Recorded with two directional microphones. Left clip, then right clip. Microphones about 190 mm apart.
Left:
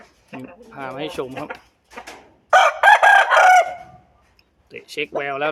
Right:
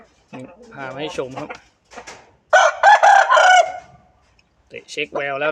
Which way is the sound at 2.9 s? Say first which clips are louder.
Right 1 dB; 40° left (ahead or behind).